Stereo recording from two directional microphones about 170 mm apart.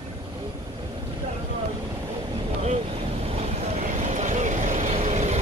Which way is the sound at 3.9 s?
45° right (ahead or behind).